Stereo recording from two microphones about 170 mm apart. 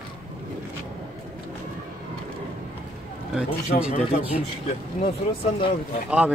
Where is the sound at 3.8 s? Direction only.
5° right (ahead or behind).